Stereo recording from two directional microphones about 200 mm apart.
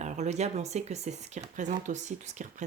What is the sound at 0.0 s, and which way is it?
Speech, 35° right (ahead or behind).